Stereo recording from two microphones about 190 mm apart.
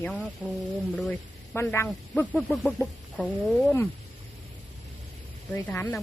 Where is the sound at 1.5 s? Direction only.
15° left (ahead or behind).